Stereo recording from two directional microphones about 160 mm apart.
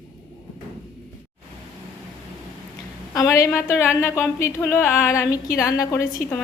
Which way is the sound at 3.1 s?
20° left (ahead or behind).